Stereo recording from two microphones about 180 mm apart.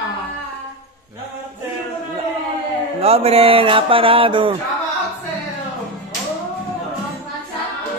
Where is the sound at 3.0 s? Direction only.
35° right (ahead or behind).